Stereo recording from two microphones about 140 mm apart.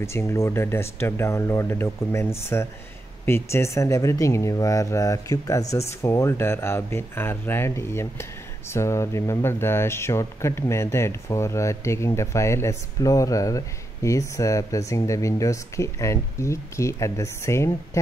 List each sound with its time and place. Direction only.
0.0 s speech: 20° left (ahead or behind)